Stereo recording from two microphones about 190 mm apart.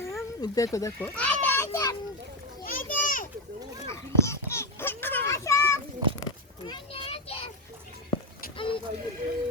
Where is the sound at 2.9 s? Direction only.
45° left (ahead or behind).